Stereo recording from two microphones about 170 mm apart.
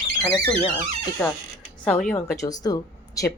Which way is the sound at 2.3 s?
20° left (ahead or behind).